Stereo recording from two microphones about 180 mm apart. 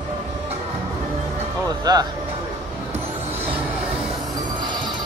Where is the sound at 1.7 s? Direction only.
20° right (ahead or behind).